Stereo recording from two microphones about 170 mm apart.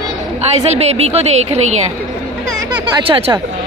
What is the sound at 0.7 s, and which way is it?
Speech, 40° right (ahead or behind).